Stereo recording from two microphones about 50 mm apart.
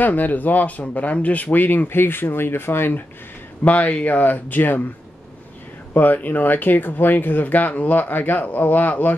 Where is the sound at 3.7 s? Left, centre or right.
Left.